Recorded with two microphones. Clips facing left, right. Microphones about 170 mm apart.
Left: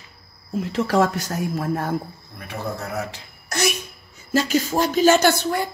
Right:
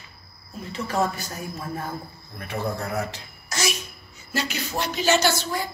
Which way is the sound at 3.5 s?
60° left (ahead or behind).